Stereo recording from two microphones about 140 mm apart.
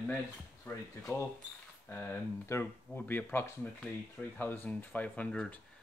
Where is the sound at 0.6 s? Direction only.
15° left (ahead or behind).